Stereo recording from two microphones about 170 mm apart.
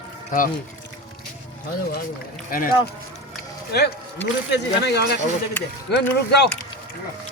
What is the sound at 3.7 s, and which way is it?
Speech, 75° left (ahead or behind).